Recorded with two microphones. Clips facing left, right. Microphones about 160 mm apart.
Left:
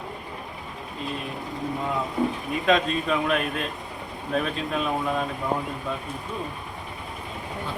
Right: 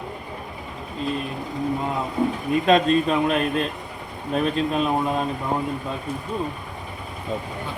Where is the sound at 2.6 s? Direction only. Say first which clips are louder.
Right 4 dB; 35° right (ahead or behind).